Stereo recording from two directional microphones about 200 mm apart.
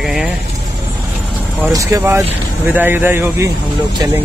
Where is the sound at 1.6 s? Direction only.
10° right (ahead or behind).